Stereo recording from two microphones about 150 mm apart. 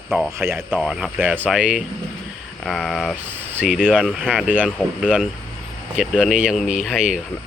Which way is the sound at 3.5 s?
10° right (ahead or behind).